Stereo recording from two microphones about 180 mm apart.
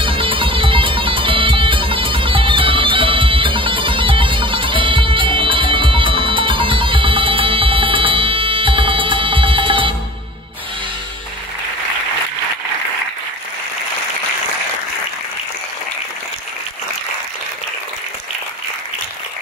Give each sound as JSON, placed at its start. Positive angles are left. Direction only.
{"t": 0.0, "sound": "music", "side_deg": -30}